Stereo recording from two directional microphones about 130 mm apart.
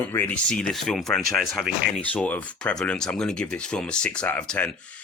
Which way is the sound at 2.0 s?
10° left (ahead or behind).